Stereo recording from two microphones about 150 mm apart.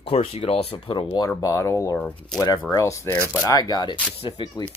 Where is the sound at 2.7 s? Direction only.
20° left (ahead or behind).